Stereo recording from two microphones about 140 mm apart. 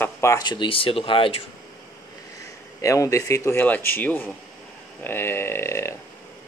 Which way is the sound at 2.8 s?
25° left (ahead or behind).